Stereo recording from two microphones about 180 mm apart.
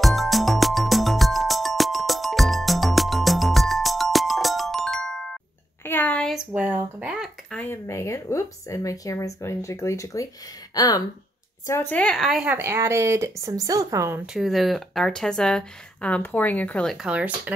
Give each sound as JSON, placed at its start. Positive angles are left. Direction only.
{"t": 0.0, "sound": "music", "side_deg": 0}
{"t": 5.9, "sound": "a sound", "side_deg": 10}
{"t": 7.5, "sound": "speech", "side_deg": 15}
{"t": 14.2, "sound": "speech", "side_deg": 0}